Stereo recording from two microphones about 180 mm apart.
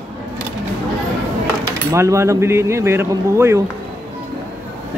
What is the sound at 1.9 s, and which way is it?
Speech, 15° right (ahead or behind).